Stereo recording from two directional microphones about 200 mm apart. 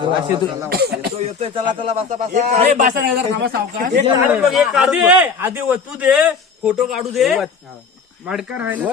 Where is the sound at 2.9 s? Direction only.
50° right (ahead or behind).